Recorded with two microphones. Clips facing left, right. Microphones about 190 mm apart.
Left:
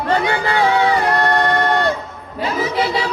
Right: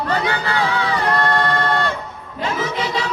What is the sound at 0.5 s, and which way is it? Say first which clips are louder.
Music: left 8 dB; 20° left (ahead or behind).